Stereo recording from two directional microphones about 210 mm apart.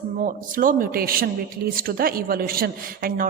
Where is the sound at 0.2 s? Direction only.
40° right (ahead or behind).